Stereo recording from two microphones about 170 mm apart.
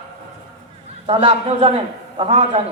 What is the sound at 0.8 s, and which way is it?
A man's voice, 35° right (ahead or behind).